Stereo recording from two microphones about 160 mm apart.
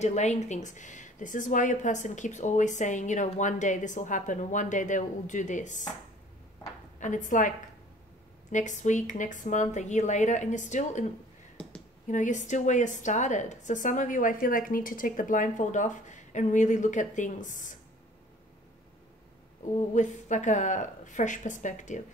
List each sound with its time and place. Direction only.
0.0 s a woman's voice: 45° left (ahead or behind)
7.0 s a woman's voice: 55° left (ahead or behind)
11.6 s a sound: 10° left (ahead or behind)
12.1 s a woman's voice: 50° left (ahead or behind)
19.6 s a woman's voice: 50° left (ahead or behind)